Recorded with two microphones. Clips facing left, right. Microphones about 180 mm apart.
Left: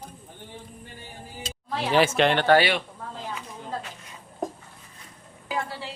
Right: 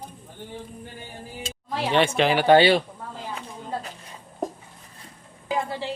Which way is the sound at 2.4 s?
25° right (ahead or behind).